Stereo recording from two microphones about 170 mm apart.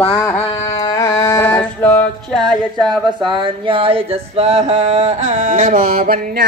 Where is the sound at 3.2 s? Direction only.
30° right (ahead or behind).